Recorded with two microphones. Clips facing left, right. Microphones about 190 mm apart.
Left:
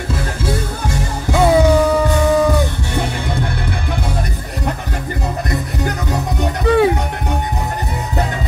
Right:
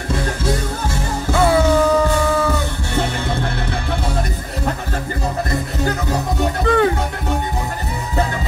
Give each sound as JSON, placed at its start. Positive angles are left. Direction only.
{"t": 1.3, "sound": "music", "side_deg": 15}
{"t": 6.7, "sound": "music", "side_deg": 10}